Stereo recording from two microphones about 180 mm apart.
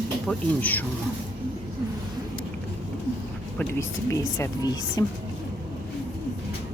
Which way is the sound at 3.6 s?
15° left (ahead or behind).